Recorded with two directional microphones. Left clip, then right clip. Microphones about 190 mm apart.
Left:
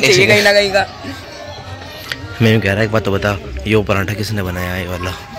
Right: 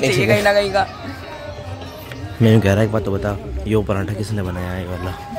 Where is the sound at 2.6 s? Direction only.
20° right (ahead or behind).